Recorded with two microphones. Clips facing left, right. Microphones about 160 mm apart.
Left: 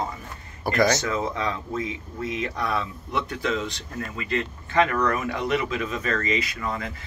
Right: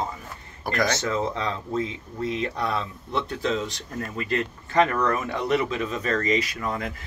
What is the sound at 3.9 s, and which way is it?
Speech, 40° right (ahead or behind).